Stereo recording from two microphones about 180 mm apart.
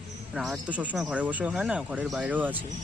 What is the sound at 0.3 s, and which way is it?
Speech, centre (ahead or behind).